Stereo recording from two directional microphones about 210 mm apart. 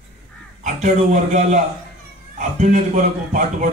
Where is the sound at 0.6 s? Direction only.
35° right (ahead or behind).